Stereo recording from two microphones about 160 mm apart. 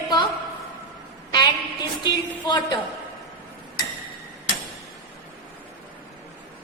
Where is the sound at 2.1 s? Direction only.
25° left (ahead or behind).